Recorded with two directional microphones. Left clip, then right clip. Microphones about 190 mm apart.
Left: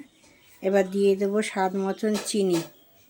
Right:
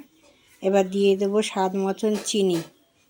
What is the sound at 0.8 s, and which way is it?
Speech, 20° left (ahead or behind).